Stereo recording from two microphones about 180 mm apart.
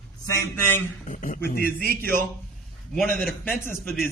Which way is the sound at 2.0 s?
10° left (ahead or behind).